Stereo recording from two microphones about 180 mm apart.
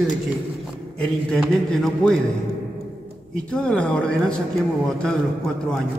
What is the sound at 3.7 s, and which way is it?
Speech, 5° left (ahead or behind).